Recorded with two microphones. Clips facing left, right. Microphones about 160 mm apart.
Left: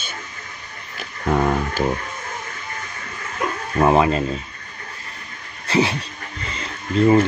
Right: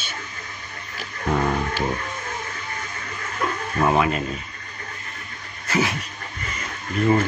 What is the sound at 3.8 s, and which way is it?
Speech, 30° left (ahead or behind).